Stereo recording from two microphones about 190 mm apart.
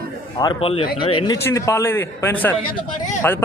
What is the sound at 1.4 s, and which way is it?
Speech, 15° left (ahead or behind).